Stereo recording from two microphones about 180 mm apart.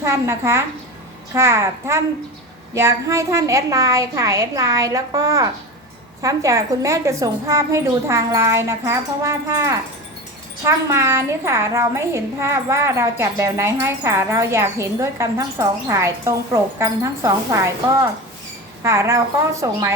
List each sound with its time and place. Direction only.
0.0 s a woman's voice: 15° right (ahead or behind)
18.8 s a child's voice: 15° right (ahead or behind)